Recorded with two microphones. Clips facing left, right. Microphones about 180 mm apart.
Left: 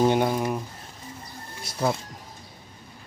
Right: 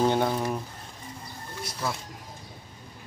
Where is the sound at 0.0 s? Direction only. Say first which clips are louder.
Left 3 dB; 10° left (ahead or behind).